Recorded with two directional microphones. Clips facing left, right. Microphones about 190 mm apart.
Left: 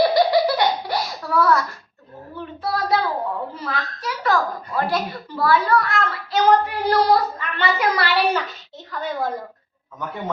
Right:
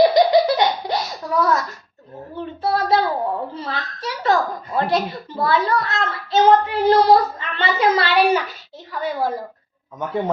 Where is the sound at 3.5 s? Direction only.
30° right (ahead or behind).